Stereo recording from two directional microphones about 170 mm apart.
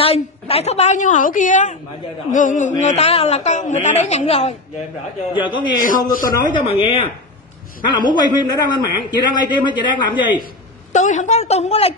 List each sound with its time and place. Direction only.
0.0 s a woman's voice: 35° left (ahead or behind)
5.8 s a woman's voice: 50° left (ahead or behind)
6.2 s a man's voice: 20° left (ahead or behind)
6.6 s a woman's voice: 35° left (ahead or behind)
8.1 s a man's voice: 25° left (ahead or behind)
10.9 s a woman's voice: 45° left (ahead or behind)